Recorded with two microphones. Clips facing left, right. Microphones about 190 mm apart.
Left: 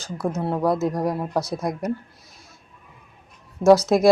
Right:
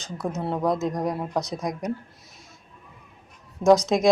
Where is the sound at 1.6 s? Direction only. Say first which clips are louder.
Left 3 dB; centre (ahead or behind).